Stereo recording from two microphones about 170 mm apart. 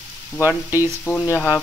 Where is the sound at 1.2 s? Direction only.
20° left (ahead or behind).